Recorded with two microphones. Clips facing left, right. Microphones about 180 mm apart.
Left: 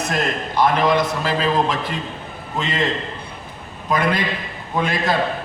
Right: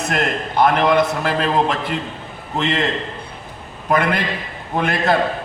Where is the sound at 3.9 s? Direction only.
60° right (ahead or behind).